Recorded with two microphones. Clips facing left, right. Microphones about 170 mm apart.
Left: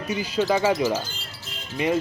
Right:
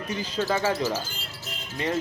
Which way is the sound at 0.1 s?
10° left (ahead or behind).